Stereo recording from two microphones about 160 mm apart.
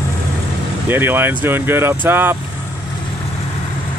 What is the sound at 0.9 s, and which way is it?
Speech, 15° right (ahead or behind).